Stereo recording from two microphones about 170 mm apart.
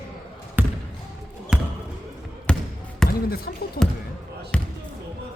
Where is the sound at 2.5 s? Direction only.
5° left (ahead or behind).